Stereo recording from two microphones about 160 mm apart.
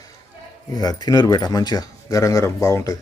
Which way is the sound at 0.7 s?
25° left (ahead or behind).